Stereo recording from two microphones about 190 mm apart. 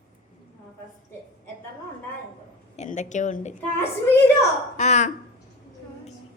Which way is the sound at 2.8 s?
40° left (ahead or behind).